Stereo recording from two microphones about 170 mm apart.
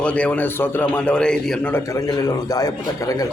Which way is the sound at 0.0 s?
5° left (ahead or behind).